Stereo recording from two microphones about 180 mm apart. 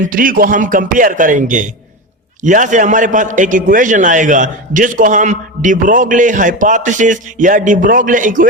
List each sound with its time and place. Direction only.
0.0 s a man's voice: 50° right (ahead or behind)